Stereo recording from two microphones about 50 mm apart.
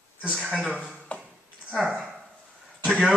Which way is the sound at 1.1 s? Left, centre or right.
Left.